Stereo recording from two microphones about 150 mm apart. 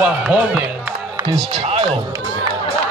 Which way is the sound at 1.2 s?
40° right (ahead or behind).